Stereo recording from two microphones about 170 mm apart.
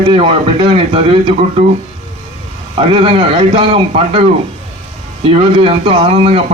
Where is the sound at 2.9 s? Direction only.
35° right (ahead or behind).